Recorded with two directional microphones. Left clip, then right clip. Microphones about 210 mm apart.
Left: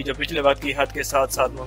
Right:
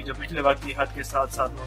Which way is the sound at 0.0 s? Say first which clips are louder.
Left 4 dB; 40° left (ahead or behind).